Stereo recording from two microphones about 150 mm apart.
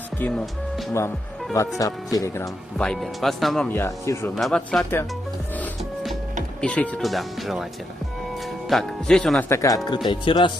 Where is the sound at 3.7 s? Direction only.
20° left (ahead or behind).